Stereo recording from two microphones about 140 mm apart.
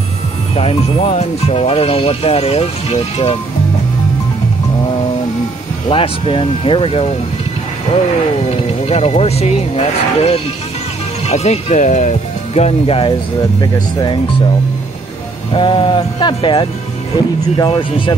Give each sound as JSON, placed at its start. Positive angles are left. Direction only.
{"t": 0.6, "sound": "speech", "side_deg": 45}
{"t": 5.9, "sound": "speech", "side_deg": 40}
{"t": 8.5, "sound": "speech", "side_deg": 50}
{"t": 13.6, "sound": "speech", "side_deg": 30}
{"t": 15.5, "sound": "speech", "side_deg": 40}